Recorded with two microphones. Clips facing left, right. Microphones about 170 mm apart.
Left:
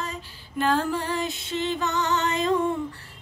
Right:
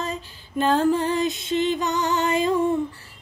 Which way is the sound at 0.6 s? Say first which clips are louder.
Right 5 dB; 25° right (ahead or behind).